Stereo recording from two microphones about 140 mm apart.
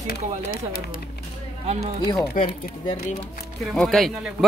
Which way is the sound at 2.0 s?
20° left (ahead or behind).